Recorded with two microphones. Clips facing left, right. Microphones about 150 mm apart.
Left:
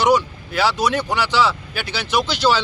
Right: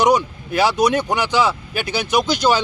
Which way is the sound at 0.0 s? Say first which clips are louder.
Right 1 dB; 20° right (ahead or behind).